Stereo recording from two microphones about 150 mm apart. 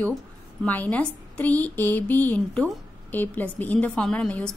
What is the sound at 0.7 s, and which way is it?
A woman's voice, 10° left (ahead or behind).